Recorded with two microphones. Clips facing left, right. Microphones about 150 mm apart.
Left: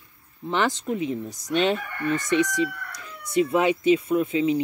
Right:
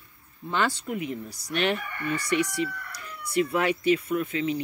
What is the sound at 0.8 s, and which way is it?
Speech, 25° left (ahead or behind).